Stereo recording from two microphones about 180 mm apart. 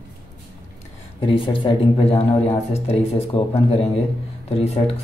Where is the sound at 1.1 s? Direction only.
30° left (ahead or behind).